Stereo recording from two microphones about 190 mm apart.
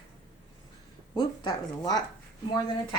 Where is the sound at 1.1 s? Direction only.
20° left (ahead or behind).